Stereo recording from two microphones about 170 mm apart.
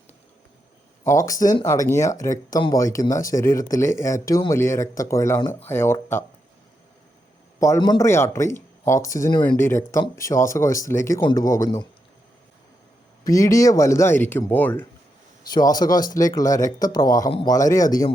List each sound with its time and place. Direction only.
1.0 s speech: 20° left (ahead or behind)
7.8 s speech: 20° left (ahead or behind)
13.2 s speech: 20° left (ahead or behind)
15.4 s speech: 25° left (ahead or behind)